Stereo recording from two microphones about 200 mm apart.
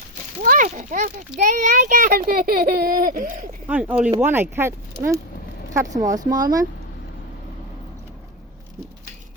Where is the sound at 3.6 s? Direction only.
10° right (ahead or behind).